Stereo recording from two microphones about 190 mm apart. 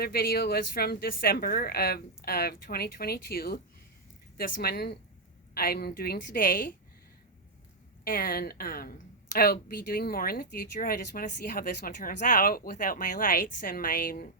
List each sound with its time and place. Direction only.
0.0 s a woman's voice: 55° left (ahead or behind)
8.0 s a woman's voice: 50° left (ahead or behind)